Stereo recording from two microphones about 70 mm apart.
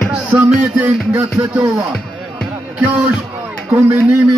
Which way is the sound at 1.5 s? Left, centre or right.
Centre.